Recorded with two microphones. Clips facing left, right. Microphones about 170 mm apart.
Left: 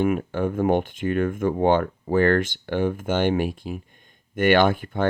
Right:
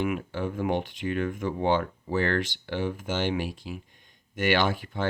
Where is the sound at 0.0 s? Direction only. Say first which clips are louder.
Left 6 dB; 50° left (ahead or behind).